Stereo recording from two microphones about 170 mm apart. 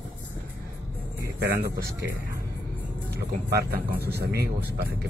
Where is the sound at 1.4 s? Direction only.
65° right (ahead or behind).